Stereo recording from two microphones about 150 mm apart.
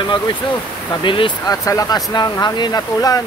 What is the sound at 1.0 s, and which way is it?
Speech, 35° left (ahead or behind).